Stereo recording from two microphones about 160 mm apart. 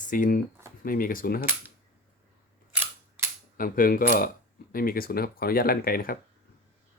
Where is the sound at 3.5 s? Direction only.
60° left (ahead or behind).